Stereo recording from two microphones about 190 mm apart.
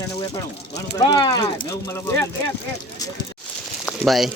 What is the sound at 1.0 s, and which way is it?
Speech, 25° left (ahead or behind).